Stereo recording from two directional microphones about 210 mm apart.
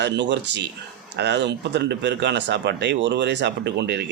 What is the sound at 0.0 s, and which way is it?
Speech, 55° right (ahead or behind).